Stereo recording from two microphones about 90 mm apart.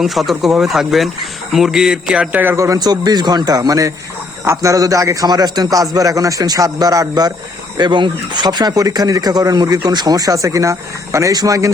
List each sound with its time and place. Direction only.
0.0 s speech: centre (ahead or behind)
2.6 s a man's voice: 40° right (ahead or behind)